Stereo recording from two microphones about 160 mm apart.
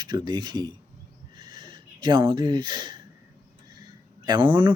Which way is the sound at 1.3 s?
30° right (ahead or behind).